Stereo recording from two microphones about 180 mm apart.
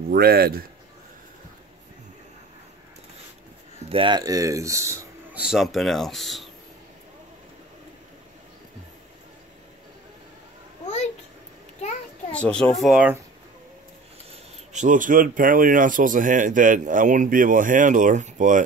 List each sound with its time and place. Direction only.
0.1 s speech: 60° right (ahead or behind)
3.9 s speech: 25° right (ahead or behind)
5.4 s speech: centre (ahead or behind)
12.3 s speech: 5° left (ahead or behind)
14.7 s speech: 45° right (ahead or behind)